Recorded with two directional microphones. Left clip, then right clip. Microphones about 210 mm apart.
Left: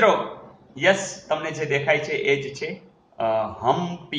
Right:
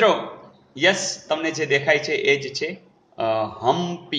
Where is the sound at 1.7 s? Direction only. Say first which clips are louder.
Right 2 dB; 40° right (ahead or behind).